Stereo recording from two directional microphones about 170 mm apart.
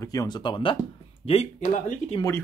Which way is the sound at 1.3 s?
40° left (ahead or behind).